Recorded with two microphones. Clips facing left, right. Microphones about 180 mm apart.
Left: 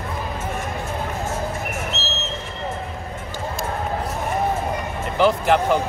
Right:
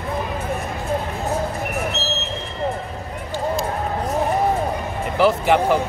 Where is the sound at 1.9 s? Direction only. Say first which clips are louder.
Right 3 dB; 15° right (ahead or behind).